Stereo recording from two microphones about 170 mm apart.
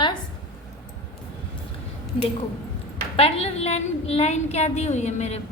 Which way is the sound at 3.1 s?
35° left (ahead or behind).